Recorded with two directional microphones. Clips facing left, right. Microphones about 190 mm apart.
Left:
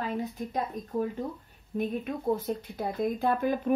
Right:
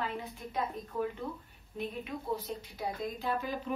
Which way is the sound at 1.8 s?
50° left (ahead or behind).